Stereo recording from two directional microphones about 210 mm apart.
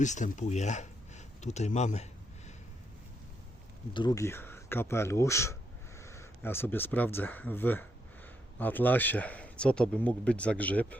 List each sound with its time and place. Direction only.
0.0 s speech: 35° left (ahead or behind)
3.9 s speech: 20° left (ahead or behind)